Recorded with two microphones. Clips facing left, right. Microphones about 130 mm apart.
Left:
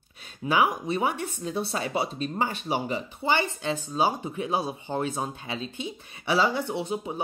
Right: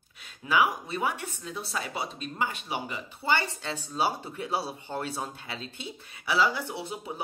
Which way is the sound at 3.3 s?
15° left (ahead or behind).